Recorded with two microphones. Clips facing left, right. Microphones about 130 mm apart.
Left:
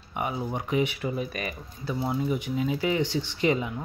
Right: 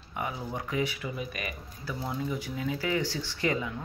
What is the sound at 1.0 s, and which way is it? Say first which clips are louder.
Speech: left 5 dB; 35° left (ahead or behind).